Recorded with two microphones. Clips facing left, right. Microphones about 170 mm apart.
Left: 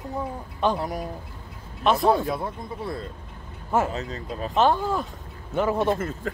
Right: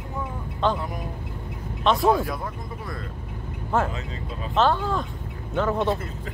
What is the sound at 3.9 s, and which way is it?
Speech, 40° left (ahead or behind).